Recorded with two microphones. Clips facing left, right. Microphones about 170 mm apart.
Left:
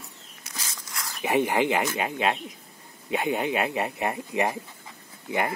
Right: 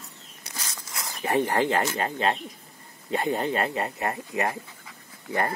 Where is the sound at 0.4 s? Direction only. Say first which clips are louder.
Right 1 dB; 25° right (ahead or behind).